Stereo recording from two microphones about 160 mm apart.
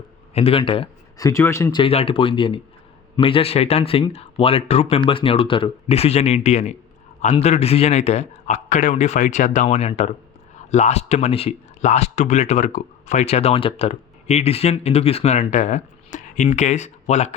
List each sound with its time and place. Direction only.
0.3 s speech: 35° left (ahead or behind)
1.2 s speech: 20° left (ahead or behind)
1.7 s speech: 35° left (ahead or behind)